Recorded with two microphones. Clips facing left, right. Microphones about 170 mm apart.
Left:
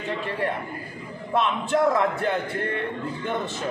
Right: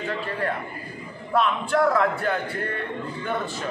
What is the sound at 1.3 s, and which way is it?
A man's voice, 20° left (ahead or behind).